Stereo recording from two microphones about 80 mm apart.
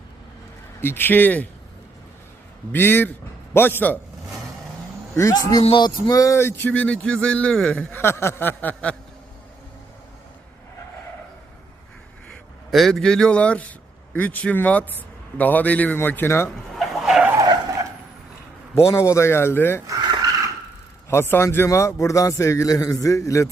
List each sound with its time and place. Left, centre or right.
0.8 s a man's voice: left
2.7 s a man's voice: left
5.3 s a man's voice: left; by 8.0 s centre
8.0 s a man's voice: left
12.7 s a man's voice: centre; by 16.5 s left
16.7 s vehicle: centre
18.7 s a man's voice: left
19.9 s a sound: right
21.1 s a man's voice: left
21.7 s a man's voice: left